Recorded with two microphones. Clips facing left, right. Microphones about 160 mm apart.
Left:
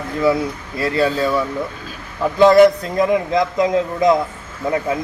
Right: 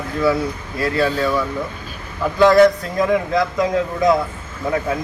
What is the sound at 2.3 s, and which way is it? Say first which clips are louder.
A man's voice: left 2 dB; 25° left (ahead or behind).